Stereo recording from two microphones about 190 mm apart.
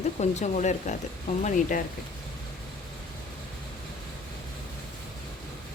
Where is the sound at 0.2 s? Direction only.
35° left (ahead or behind).